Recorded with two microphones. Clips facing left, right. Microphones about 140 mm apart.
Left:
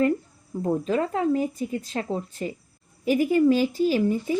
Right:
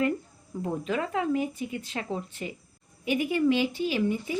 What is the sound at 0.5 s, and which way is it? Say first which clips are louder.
A woman's voice: left 6 dB; 35° left (ahead or behind).